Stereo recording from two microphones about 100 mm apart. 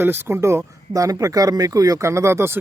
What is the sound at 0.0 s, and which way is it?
Speech, 25° right (ahead or behind).